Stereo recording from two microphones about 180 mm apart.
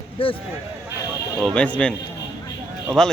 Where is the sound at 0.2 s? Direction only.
30° left (ahead or behind).